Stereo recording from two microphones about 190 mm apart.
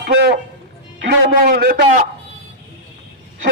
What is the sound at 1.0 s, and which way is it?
Speech, 55° right (ahead or behind).